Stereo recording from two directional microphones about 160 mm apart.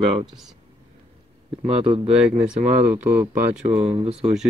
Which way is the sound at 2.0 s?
5° right (ahead or behind).